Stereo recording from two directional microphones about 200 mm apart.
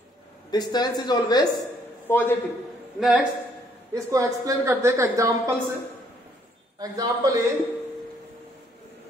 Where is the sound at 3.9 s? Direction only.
15° right (ahead or behind).